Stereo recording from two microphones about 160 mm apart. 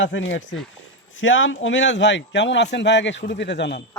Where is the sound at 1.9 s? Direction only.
90° left.